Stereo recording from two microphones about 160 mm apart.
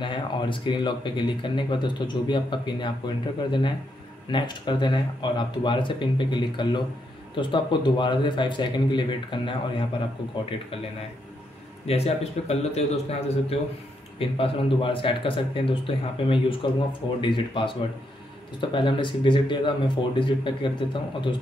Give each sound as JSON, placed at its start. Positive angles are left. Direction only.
{"t": 0.0, "sound": "speech", "side_deg": 30}
{"t": 11.9, "sound": "speech", "side_deg": 40}
{"t": 14.1, "sound": "speech", "side_deg": 35}